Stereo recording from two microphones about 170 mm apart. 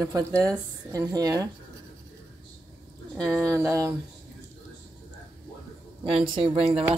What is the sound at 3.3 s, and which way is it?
Speech, centre (ahead or behind).